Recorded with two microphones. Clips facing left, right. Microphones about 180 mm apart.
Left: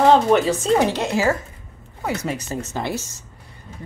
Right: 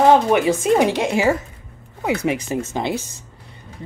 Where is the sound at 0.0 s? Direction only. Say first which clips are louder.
Right 1 dB; 15° right (ahead or behind).